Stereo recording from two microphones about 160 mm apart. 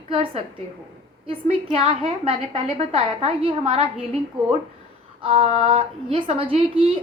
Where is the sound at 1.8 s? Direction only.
35° right (ahead or behind).